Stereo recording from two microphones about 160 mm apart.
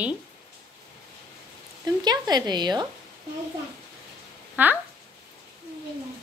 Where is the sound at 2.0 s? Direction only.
25° right (ahead or behind).